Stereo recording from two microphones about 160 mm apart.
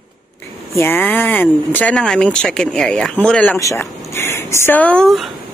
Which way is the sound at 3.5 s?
20° left (ahead or behind).